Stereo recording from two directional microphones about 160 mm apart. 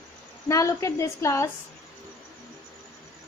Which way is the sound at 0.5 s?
20° left (ahead or behind).